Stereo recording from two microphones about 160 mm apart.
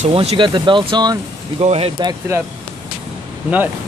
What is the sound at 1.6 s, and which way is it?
Speech, 40° right (ahead or behind).